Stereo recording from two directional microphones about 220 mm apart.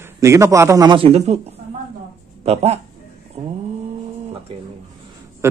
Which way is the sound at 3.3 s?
25° right (ahead or behind).